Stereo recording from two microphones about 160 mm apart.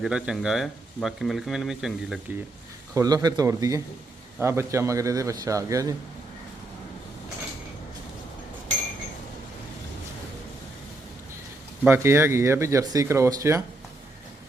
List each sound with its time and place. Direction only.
0.0 s speech: 5° right (ahead or behind)
2.9 s a man's voice: 20° right (ahead or behind)
11.9 s speech: 15° right (ahead or behind)